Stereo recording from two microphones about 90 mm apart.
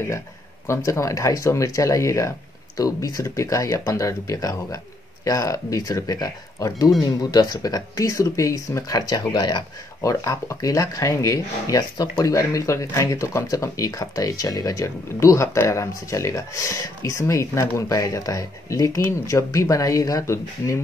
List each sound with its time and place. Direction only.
0.7 s speech: 35° left (ahead or behind); by 9.6 s 55° left (ahead or behind)
10.0 s speech: 35° left (ahead or behind)